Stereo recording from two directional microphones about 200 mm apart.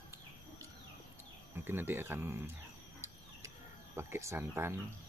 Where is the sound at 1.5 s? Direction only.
10° right (ahead or behind).